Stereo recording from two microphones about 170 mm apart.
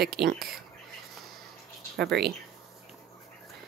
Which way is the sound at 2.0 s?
75° right (ahead or behind).